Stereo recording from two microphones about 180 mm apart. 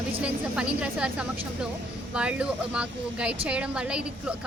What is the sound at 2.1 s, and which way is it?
A woman's voice, 5° right (ahead or behind).